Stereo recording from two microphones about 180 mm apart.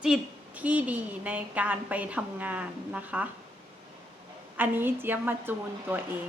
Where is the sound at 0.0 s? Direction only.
5° right (ahead or behind).